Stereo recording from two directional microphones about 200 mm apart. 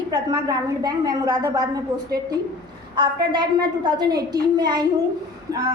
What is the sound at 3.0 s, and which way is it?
A woman's voice, 20° right (ahead or behind).